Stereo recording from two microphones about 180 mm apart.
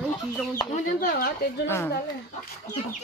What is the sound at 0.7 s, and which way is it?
Speech, 50° left (ahead or behind).